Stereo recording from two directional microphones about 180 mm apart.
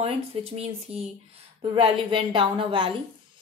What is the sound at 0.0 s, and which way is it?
A woman's voice, 35° right (ahead or behind).